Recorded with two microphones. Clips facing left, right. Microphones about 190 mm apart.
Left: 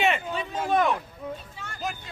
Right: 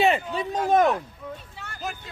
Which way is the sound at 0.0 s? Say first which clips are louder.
Right 4 dB; 35° right (ahead or behind).